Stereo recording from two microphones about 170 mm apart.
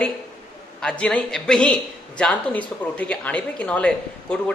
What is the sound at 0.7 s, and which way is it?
A man's voice, 5° left (ahead or behind).